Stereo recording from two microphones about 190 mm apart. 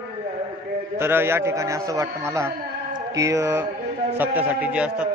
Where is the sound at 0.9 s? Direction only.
10° right (ahead or behind).